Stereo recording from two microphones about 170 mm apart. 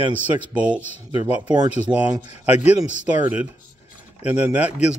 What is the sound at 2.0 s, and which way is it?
Speech, 10° right (ahead or behind).